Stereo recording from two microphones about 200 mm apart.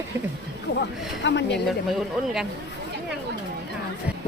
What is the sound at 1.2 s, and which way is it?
Speech, 60° left (ahead or behind).